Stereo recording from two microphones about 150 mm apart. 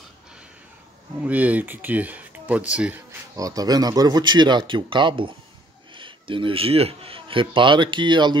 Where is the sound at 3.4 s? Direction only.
25° right (ahead or behind).